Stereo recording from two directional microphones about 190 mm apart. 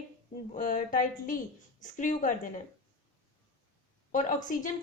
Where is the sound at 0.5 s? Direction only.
45° left (ahead or behind).